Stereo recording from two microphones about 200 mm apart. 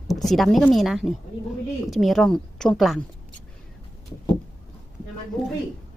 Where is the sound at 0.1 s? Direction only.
Centre (ahead or behind).